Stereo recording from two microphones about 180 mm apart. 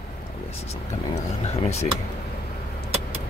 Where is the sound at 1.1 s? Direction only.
35° left (ahead or behind).